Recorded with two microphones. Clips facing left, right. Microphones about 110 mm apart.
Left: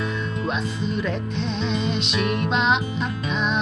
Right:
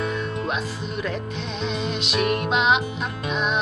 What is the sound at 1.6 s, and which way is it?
Music, 5° right (ahead or behind).